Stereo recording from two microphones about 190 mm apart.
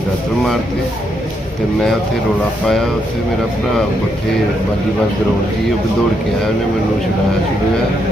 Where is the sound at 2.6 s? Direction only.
5° left (ahead or behind).